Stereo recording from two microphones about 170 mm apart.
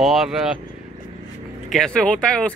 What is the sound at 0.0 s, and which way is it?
Speech, centre (ahead or behind).